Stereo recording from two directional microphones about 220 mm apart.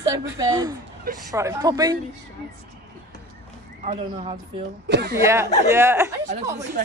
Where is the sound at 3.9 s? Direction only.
30° right (ahead or behind).